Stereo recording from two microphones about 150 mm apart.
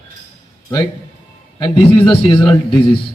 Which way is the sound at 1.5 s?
30° left (ahead or behind).